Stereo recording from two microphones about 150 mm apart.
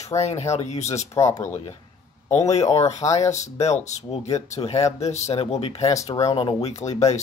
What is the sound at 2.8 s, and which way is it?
Speech, 45° left (ahead or behind).